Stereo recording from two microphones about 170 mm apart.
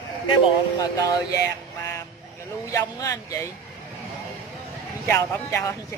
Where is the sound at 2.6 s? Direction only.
20° left (ahead or behind).